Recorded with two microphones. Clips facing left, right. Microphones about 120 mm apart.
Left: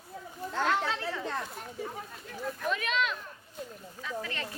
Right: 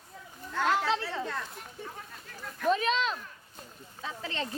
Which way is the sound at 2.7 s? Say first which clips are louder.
Right 5 dB; 35° right (ahead or behind).